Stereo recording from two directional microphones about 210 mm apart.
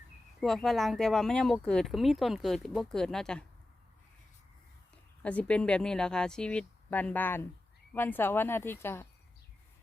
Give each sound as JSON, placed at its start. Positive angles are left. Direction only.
{"t": 0.3, "sound": "speech", "side_deg": 0}
{"t": 5.2, "sound": "speech", "side_deg": 5}